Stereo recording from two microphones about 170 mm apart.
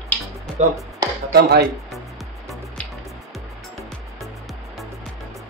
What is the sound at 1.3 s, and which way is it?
Speech, 70° right (ahead or behind).